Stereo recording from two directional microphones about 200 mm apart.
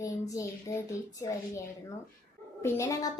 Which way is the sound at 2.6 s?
15° left (ahead or behind).